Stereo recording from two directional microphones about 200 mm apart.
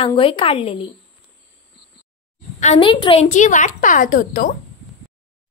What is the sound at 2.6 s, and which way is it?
Speech, 30° left (ahead or behind).